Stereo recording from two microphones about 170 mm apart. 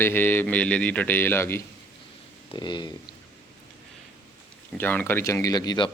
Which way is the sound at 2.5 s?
25° left (ahead or behind).